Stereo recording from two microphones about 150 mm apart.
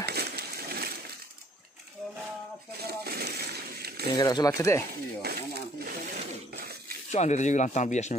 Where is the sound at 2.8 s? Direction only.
90° right.